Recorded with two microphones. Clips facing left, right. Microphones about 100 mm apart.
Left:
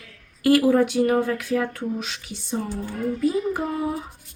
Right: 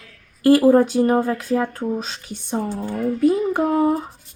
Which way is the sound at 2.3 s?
50° right (ahead or behind).